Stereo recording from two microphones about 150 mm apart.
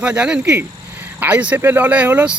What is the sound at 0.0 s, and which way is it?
Speech, 5° right (ahead or behind).